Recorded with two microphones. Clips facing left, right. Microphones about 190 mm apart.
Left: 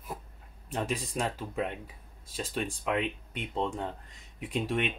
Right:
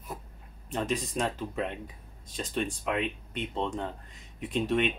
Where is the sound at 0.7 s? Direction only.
10° left (ahead or behind).